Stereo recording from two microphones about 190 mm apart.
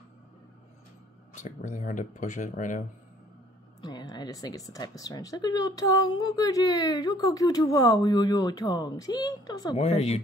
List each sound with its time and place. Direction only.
1.3 s speech: 40° left (ahead or behind)
3.8 s a woman's voice: 20° left (ahead or behind)
9.8 s speech: 35° left (ahead or behind)